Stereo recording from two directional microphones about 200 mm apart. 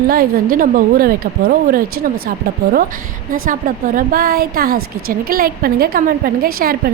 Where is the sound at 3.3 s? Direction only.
45° right (ahead or behind).